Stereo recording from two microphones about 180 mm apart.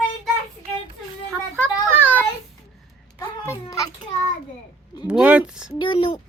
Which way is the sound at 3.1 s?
15° left (ahead or behind).